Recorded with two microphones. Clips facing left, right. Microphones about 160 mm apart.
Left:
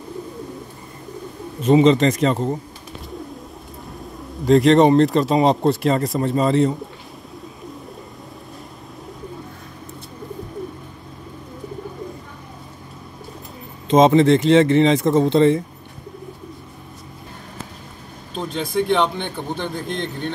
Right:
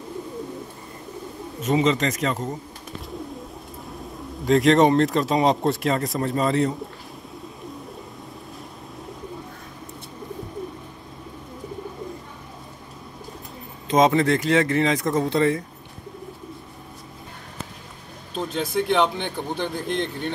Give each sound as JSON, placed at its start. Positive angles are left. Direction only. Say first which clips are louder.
{"t": 1.6, "sound": "speech", "louder": "left 7 dB", "side_deg": 30}
{"t": 4.5, "sound": "speech", "louder": "left 4 dB", "side_deg": 0}
{"t": 13.8, "sound": "speech", "louder": "left 5 dB", "side_deg": 25}
{"t": 18.3, "sound": "speech", "louder": "left 2 dB", "side_deg": -5}